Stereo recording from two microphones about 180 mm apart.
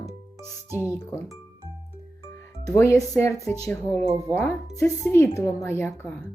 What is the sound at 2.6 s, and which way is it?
A child's voice, 15° left (ahead or behind).